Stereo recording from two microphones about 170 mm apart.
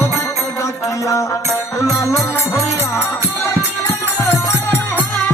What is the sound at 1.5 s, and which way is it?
Speech, 15° left (ahead or behind).